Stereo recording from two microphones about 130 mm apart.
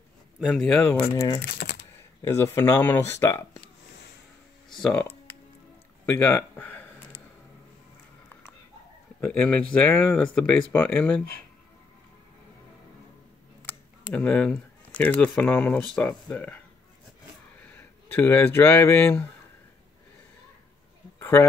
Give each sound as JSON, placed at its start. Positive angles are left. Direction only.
{"t": 0.5, "sound": "speech", "side_deg": 10}
{"t": 1.1, "sound": "speech", "side_deg": 25}
{"t": 1.6, "sound": "computer keyboard", "side_deg": 90}
{"t": 2.3, "sound": "speech", "side_deg": 20}
{"t": 4.6, "sound": "speech", "side_deg": 5}
{"t": 6.0, "sound": "speech", "side_deg": 15}
{"t": 9.3, "sound": "speech", "side_deg": 10}
{"t": 14.1, "sound": "speech", "side_deg": 10}
{"t": 17.6, "sound": "speech", "side_deg": 15}
{"t": 21.2, "sound": "a sound", "side_deg": 20}